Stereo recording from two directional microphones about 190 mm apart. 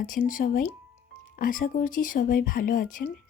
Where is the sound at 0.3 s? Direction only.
45° left (ahead or behind).